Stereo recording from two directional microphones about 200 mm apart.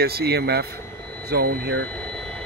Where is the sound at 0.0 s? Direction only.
50° right (ahead or behind).